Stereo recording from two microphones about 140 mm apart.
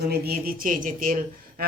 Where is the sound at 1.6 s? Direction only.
90° right.